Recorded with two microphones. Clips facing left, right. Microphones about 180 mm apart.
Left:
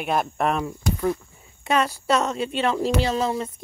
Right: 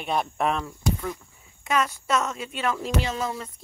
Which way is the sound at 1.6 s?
30° left (ahead or behind).